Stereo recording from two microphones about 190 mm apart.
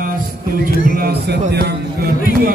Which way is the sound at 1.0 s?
55° right (ahead or behind).